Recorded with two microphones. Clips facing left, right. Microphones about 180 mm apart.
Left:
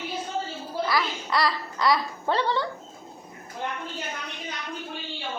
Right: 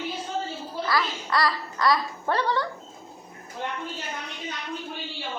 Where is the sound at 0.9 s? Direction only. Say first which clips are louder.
Right 2 dB; 15° left (ahead or behind).